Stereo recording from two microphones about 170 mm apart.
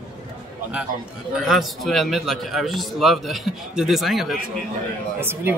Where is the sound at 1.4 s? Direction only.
Centre (ahead or behind).